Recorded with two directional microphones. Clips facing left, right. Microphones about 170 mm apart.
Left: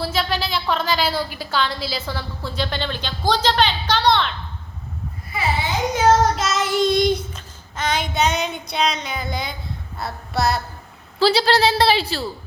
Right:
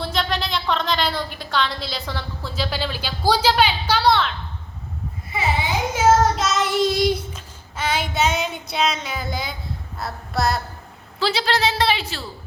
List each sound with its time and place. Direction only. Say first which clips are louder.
0.0 s a woman's voice: left 1 dB; 5° left (ahead or behind)
5.9 s child singing: even; 5° right (ahead or behind)
10.0 s a woman's voice: left 1 dB; centre (ahead or behind)
11.2 s speech: left 5 dB; 35° left (ahead or behind)